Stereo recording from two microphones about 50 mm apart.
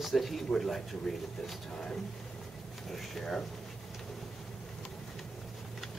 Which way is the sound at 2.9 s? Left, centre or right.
Centre.